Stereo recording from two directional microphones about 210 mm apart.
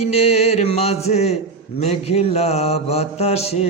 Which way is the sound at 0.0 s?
30° left (ahead or behind).